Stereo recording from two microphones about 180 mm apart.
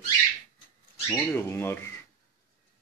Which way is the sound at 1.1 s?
10° left (ahead or behind).